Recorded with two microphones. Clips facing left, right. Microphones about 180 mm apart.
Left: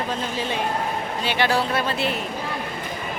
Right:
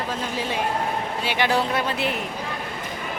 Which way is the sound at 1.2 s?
15° right (ahead or behind).